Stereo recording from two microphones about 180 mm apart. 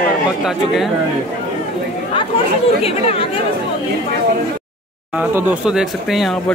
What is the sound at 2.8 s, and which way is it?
Speech, 30° left (ahead or behind).